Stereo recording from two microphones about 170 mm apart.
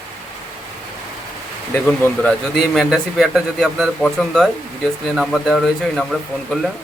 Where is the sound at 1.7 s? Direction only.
10° left (ahead or behind).